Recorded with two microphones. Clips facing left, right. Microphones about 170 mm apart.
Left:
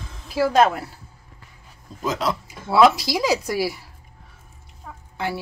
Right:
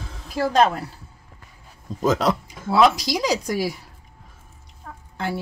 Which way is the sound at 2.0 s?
45° right (ahead or behind).